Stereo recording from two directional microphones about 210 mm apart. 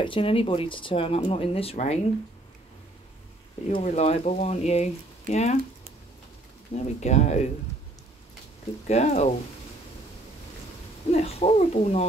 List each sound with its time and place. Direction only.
0.0 s speech: 25° left (ahead or behind)
3.6 s speech: 30° left (ahead or behind)
6.7 s speech: 30° left (ahead or behind)
8.8 s speech: 30° left (ahead or behind)
11.1 s speech: 30° left (ahead or behind)